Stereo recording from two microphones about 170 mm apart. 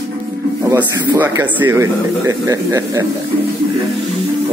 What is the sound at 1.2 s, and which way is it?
Speech, 10° right (ahead or behind).